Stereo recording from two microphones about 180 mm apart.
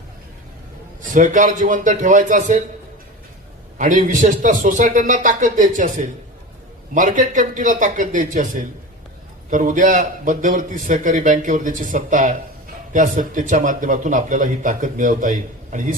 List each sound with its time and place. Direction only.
1.1 s speech: 45° right (ahead or behind)
3.8 s speech: 45° right (ahead or behind)